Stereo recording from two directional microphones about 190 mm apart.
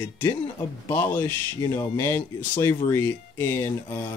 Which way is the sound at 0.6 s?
10° left (ahead or behind).